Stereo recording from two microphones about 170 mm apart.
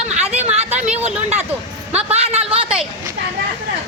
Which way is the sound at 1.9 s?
35° right (ahead or behind).